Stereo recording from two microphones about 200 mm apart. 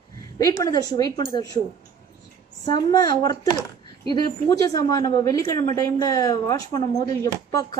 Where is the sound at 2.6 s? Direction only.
20° left (ahead or behind).